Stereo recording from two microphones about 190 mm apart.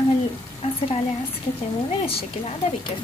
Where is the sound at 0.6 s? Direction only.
30° left (ahead or behind).